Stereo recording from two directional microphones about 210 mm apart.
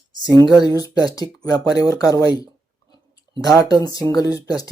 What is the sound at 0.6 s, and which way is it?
Speech, 20° left (ahead or behind).